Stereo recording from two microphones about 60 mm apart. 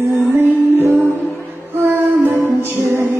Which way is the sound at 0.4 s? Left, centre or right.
Right.